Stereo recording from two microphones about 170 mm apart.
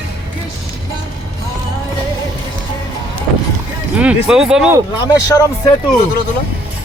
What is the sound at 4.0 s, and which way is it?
Speech, 5° right (ahead or behind).